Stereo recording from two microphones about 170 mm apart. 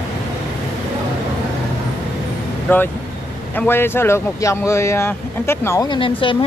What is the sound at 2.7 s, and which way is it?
Speech, 10° left (ahead or behind).